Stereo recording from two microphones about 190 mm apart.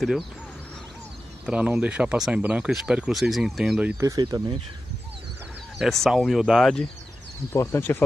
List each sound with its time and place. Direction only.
1.4 s speech: 5° right (ahead or behind)
4.0 s speech: 20° right (ahead or behind)
5.8 s speech: centre (ahead or behind)
7.5 s speech: 15° left (ahead or behind)